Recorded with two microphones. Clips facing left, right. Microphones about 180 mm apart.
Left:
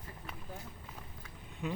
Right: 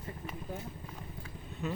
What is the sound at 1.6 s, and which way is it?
Vehicle, 10° left (ahead or behind).